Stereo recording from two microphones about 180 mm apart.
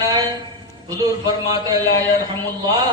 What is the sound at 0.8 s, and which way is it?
Speech, 20° right (ahead or behind).